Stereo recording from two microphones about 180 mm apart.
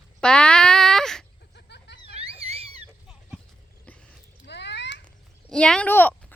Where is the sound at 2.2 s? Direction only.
35° right (ahead or behind).